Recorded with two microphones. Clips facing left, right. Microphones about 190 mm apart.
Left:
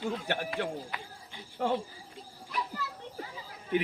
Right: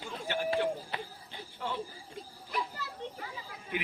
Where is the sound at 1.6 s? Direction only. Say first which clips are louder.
Left 8 dB; 55° left (ahead or behind).